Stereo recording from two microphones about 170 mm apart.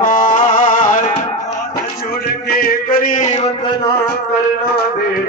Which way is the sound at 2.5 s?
60° left (ahead or behind).